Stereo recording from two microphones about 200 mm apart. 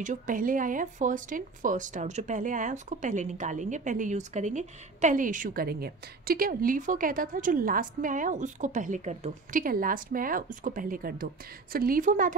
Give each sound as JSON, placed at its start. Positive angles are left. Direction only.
{"t": 0.0, "sound": "speech", "side_deg": -40}